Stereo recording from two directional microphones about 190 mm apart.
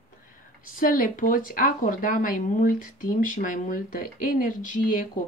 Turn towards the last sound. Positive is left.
turn(degrees=45)  # may be behind; listen again after turning